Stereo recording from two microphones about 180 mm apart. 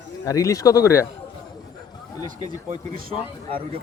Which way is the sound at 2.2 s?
45° right (ahead or behind).